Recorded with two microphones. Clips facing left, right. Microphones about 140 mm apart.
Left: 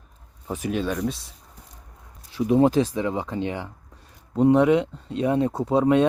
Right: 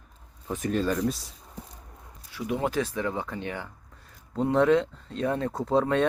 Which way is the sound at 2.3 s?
25° left (ahead or behind).